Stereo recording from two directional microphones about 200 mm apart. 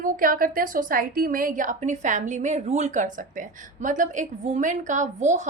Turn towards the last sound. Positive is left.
turn(degrees=-35)  # may be behind; listen again after turning